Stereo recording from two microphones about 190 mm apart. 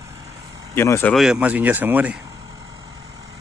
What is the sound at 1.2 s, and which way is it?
Speech, 5° right (ahead or behind).